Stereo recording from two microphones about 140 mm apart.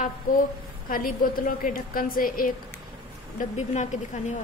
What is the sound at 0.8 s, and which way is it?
A woman's voice, 90° left.